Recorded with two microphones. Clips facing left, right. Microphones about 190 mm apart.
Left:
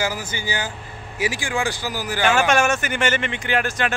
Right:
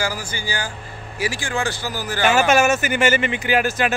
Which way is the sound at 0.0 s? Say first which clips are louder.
Even; 20° left (ahead or behind).